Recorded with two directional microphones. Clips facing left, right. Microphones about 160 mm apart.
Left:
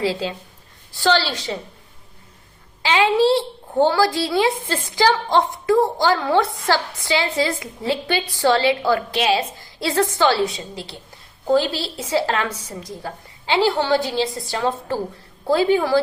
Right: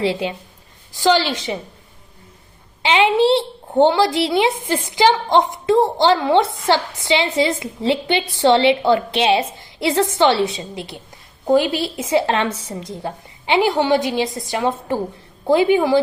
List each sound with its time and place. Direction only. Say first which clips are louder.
0.0 s a woman's voice: right 2 dB; 20° right (ahead or behind)
2.8 s a woman's voice: right 2 dB; 20° right (ahead or behind)